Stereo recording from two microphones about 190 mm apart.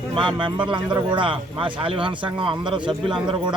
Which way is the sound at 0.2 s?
25° right (ahead or behind).